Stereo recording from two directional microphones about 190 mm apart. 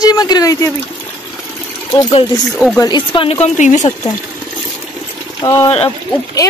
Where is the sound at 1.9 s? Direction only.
25° left (ahead or behind).